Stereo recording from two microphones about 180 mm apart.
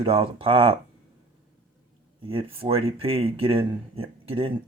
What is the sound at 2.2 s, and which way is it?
Speech, 30° right (ahead or behind).